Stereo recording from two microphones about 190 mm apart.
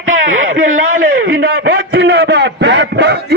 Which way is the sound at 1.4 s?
60° right (ahead or behind).